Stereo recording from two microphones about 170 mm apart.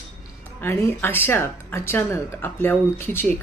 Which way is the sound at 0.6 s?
15° left (ahead or behind).